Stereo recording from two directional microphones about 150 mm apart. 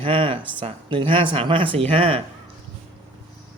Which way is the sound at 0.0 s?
35° right (ahead or behind).